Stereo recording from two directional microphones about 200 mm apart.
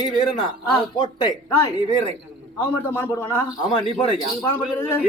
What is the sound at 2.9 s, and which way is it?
Speech, 15° left (ahead or behind).